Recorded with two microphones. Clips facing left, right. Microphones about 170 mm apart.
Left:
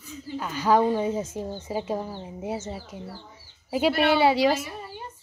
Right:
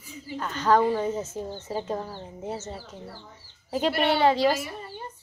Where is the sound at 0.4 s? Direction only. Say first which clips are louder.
Even; 10° left (ahead or behind).